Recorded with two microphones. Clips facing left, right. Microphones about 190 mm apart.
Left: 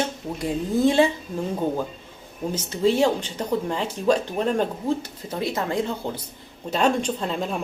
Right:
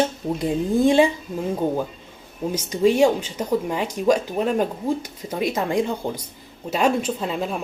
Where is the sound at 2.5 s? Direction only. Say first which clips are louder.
Right 3 dB; 15° right (ahead or behind).